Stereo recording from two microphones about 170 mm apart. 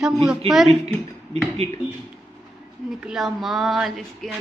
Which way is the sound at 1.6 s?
40° right (ahead or behind).